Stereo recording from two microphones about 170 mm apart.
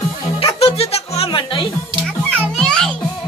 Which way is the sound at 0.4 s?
35° left (ahead or behind).